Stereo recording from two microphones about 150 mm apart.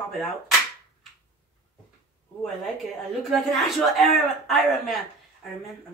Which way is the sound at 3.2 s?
Centre (ahead or behind).